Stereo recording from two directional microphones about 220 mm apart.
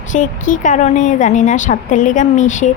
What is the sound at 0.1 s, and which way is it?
A woman's voice, 35° left (ahead or behind).